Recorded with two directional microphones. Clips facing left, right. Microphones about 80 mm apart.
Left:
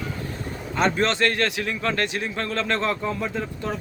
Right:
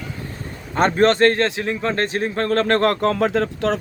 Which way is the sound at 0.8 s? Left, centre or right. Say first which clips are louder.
Right 6 dB; right.